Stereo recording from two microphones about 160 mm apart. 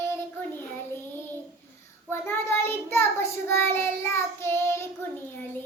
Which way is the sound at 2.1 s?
15° left (ahead or behind).